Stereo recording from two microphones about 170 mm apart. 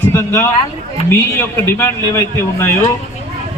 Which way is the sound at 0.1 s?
15° left (ahead or behind).